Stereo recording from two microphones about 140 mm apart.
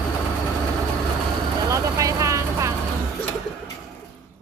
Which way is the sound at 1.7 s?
25° right (ahead or behind).